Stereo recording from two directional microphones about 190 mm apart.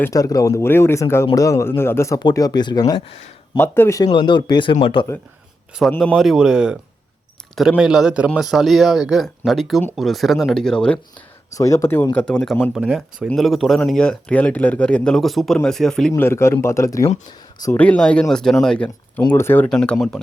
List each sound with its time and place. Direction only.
0.0 s speech: 20° left (ahead or behind)
6.0 s speech: centre (ahead or behind)
7.8 s speech: 5° right (ahead or behind)
11.5 s speech: 15° left (ahead or behind)
12.7 s speech: 5° right (ahead or behind)